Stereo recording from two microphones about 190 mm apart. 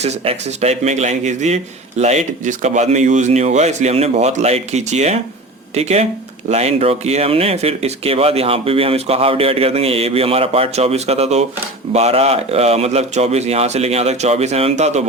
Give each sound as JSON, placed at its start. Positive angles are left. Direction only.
{"t": 0.0, "sound": "speech", "side_deg": -35}